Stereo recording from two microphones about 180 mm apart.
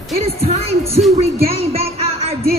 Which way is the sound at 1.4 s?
35° right (ahead or behind).